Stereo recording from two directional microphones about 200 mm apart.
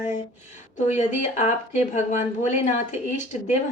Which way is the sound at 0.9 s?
35° left (ahead or behind).